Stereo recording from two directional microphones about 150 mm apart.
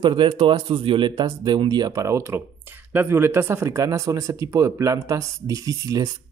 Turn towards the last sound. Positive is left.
turn(degrees=-25)  # may be behind; listen again after turning